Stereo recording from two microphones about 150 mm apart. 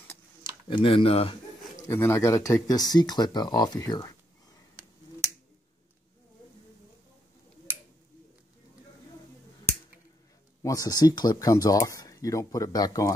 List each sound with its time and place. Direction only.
0.7 s speech: 35° left (ahead or behind)
1.8 s speech: 20° left (ahead or behind)
10.6 s speech: 25° left (ahead or behind)